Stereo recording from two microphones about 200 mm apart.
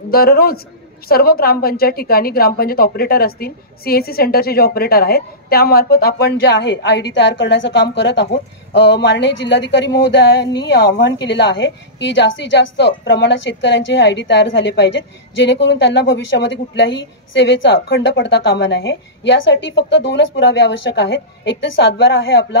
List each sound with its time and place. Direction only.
0.1 s a man's voice: 50° left (ahead or behind)
17.9 s a woman's voice: 70° left (ahead or behind)